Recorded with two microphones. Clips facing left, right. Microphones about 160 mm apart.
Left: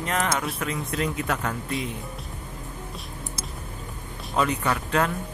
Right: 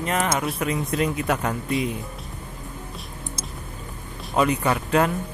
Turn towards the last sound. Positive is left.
turn(degrees=-15)  # may be behind; listen again after turning